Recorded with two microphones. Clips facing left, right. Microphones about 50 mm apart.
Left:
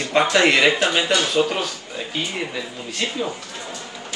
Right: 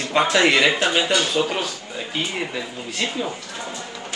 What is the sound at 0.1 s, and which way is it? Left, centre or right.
Speech, centre.